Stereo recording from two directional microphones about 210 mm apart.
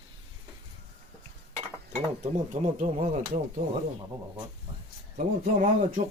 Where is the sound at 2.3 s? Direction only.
35° right (ahead or behind).